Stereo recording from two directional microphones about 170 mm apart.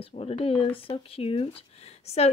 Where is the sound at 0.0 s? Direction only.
35° left (ahead or behind).